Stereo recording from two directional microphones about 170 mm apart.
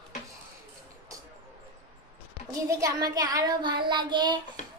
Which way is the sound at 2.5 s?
20° right (ahead or behind).